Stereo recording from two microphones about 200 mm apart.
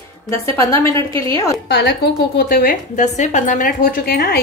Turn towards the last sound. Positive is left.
turn(degrees=50)  # may be behind; listen again after turning